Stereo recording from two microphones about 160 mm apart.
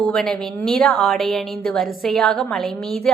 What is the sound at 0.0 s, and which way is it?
A woman's voice, 5° left (ahead or behind).